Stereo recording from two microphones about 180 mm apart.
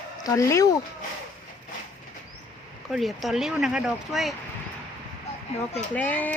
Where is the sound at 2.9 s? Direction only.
Centre (ahead or behind).